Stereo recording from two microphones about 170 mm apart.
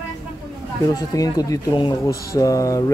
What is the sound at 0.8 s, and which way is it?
Speech, 20° left (ahead or behind).